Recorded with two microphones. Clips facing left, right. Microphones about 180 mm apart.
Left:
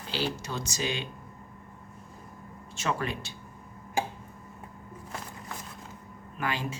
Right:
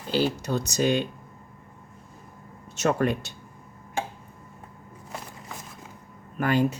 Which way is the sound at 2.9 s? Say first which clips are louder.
Right 6 dB; 50° right (ahead or behind).